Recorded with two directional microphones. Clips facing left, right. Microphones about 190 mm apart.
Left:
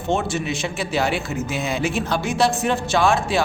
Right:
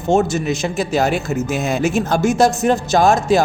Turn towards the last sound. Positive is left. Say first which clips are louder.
# right 5 dB
turn(degrees=-40)  # may be behind; listen again after turning